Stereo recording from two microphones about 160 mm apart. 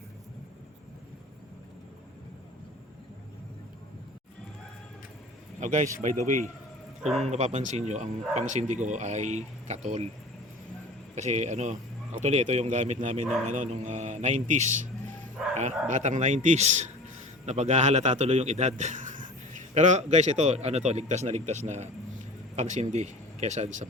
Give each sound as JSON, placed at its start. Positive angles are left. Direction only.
{"t": 5.5, "sound": "speech", "side_deg": -50}
{"t": 7.0, "sound": "speech", "side_deg": 0}
{"t": 7.3, "sound": "speech", "side_deg": -45}
{"t": 11.1, "sound": "speech", "side_deg": -45}